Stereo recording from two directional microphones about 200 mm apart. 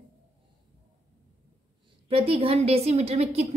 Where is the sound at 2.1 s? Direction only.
30° right (ahead or behind).